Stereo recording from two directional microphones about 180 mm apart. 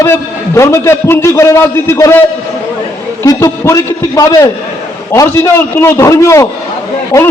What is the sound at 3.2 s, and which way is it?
A man's voice, 15° left (ahead or behind).